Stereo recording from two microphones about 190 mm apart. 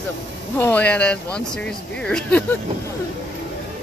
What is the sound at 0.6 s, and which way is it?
Speech, 10° left (ahead or behind).